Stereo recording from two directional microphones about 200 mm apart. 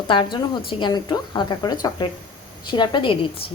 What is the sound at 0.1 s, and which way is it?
A woman's voice, 25° left (ahead or behind).